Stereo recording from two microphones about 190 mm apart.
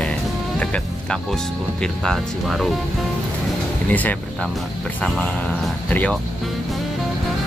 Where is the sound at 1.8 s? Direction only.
Centre (ahead or behind).